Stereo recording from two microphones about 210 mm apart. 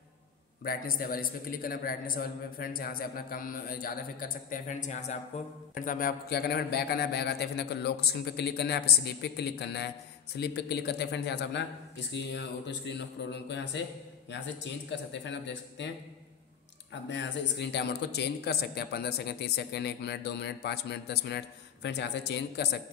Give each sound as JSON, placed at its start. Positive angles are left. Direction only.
{"t": 0.7, "sound": "a man's voice", "side_deg": 45}
{"t": 17.1, "sound": "a man's voice", "side_deg": 55}